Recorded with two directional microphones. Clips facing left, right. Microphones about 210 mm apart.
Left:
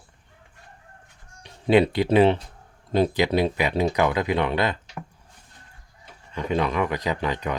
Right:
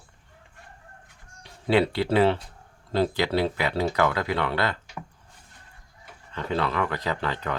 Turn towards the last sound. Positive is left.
turn(degrees=15)  # may be behind; listen again after turning